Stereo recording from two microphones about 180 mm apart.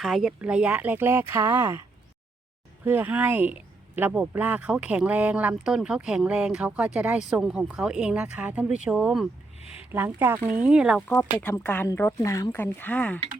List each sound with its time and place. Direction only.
0.0 s speech: centre (ahead or behind)
2.8 s speech: 10° right (ahead or behind)
9.6 s a sound: 35° left (ahead or behind)
9.9 s speech: 10° right (ahead or behind)
11.1 s speech: 10° left (ahead or behind)